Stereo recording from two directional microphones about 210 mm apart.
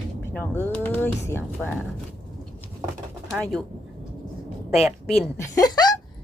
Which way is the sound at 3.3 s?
5° left (ahead or behind).